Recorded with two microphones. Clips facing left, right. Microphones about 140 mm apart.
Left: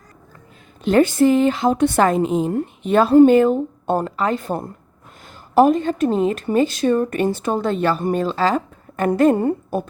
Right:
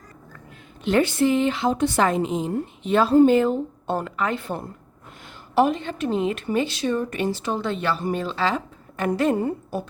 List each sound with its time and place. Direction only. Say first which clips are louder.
0.9 s a woman's voice: left 5 dB; 40° left (ahead or behind)
4.0 s a woman's voice: left 5 dB; 35° left (ahead or behind); by 9.8 s 55° left (ahead or behind)